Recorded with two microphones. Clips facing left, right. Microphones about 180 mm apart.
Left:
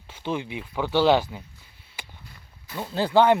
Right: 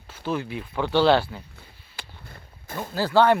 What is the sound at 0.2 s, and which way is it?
Speech, 20° left (ahead or behind).